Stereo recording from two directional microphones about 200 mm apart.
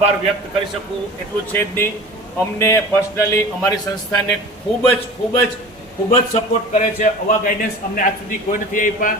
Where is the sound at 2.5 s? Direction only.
15° left (ahead or behind).